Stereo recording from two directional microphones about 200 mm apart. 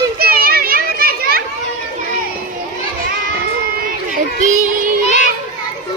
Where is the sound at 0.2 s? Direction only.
50° right (ahead or behind).